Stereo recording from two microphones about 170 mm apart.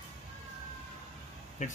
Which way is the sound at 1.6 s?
45° left (ahead or behind).